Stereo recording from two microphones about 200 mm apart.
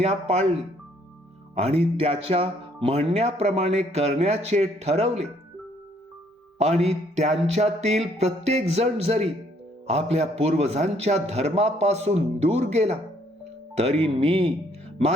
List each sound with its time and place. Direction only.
0.0 s a man's voice: 30° right (ahead or behind)
1.5 s a man's voice: 30° right (ahead or behind)
6.8 s a man's voice: 35° right (ahead or behind)